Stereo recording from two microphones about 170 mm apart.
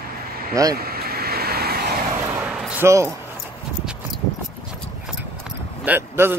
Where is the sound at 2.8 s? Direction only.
15° right (ahead or behind).